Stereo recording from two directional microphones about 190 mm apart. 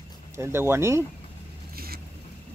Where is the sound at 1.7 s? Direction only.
50° right (ahead or behind).